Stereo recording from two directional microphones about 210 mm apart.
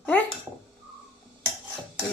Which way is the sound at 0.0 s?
10° left (ahead or behind).